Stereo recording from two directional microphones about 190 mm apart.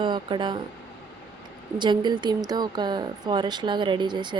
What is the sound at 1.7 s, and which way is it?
Speech, 25° right (ahead or behind).